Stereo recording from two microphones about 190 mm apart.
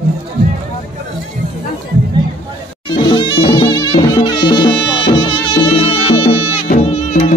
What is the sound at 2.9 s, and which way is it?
Music, 25° left (ahead or behind).